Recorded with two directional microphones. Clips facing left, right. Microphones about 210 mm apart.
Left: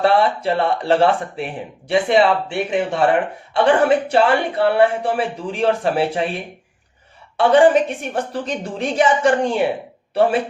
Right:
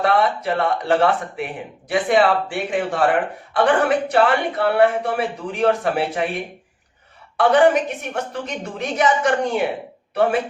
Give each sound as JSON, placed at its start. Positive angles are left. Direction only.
{"t": 0.0, "sound": "speech", "side_deg": 30}
{"t": 7.3, "sound": "speech", "side_deg": 30}